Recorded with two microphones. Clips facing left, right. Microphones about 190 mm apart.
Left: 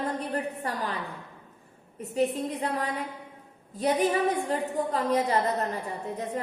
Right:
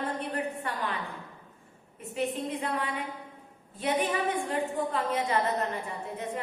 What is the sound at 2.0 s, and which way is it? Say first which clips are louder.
A woman's voice: left 5 dB; 40° left (ahead or behind).